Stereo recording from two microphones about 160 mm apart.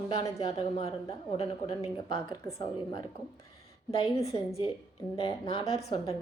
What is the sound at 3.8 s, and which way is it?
Speech, 30° left (ahead or behind).